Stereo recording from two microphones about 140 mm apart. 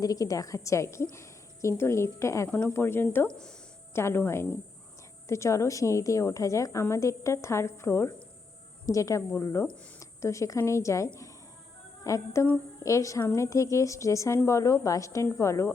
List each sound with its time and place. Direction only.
0.0 s a woman's voice: 25° left (ahead or behind); by 3.5 s 5° left (ahead or behind)
3.9 s a woman's voice: 15° left (ahead or behind)